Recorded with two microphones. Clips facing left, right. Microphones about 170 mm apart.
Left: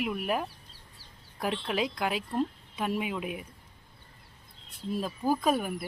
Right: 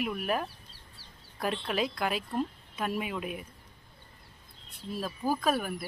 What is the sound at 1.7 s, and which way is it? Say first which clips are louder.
Speech: left 1 dB; 15° left (ahead or behind).